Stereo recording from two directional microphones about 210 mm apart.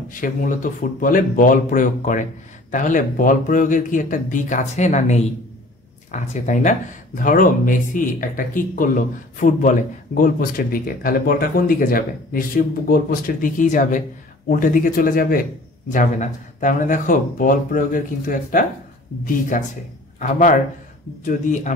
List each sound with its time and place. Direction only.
0.1 s speech: 40° left (ahead or behind)
20.2 s a man's voice: 40° left (ahead or behind)